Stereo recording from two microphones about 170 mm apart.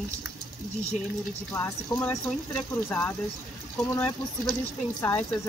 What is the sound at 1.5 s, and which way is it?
Speech, 10° left (ahead or behind).